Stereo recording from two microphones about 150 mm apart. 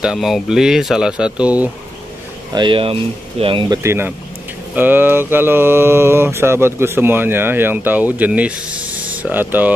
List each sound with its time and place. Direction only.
0.0 s speech: 5° right (ahead or behind)
2.5 s speech: 35° right (ahead or behind)
4.7 s mantra: 15° right (ahead or behind)